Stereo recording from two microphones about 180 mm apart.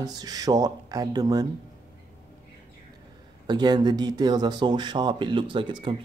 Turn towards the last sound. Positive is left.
turn(degrees=-25)  # may be behind; listen again after turning